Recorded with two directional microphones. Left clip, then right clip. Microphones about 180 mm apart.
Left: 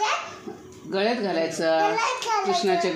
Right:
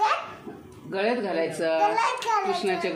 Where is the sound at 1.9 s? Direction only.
5° right (ahead or behind).